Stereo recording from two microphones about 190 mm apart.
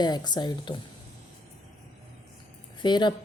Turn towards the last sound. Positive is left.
turn(degrees=25)  # may be behind; listen again after turning